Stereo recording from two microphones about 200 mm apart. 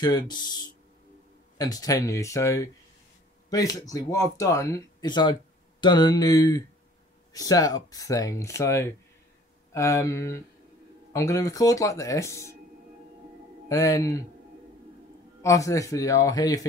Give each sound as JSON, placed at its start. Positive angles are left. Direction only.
{"t": 0.0, "sound": "speech", "side_deg": 20}
{"t": 13.7, "sound": "speech", "side_deg": 15}
{"t": 15.4, "sound": "speech", "side_deg": 15}